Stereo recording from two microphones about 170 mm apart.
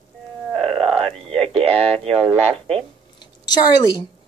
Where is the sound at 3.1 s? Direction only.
25° left (ahead or behind).